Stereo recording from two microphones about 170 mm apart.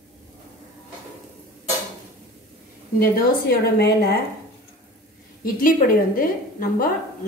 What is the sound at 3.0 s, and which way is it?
Speech, 65° left (ahead or behind).